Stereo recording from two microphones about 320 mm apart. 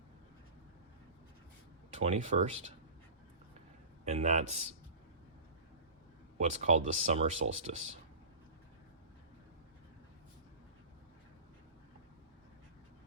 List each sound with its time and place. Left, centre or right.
2.0 s speech: right
4.0 s speech: right
6.4 s speech: right